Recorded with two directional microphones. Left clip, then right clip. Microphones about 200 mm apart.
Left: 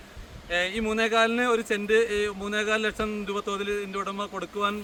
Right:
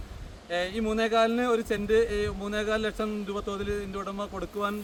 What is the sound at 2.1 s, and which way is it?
Speech, 15° right (ahead or behind).